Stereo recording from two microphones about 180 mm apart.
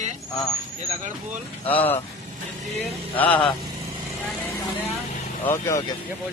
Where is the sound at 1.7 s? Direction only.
10° left (ahead or behind).